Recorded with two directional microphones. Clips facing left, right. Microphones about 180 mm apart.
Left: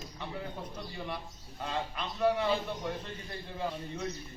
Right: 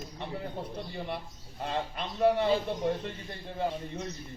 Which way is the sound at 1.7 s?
30° right (ahead or behind).